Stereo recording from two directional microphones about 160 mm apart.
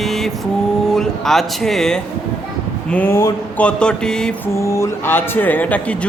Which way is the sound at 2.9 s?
15° left (ahead or behind).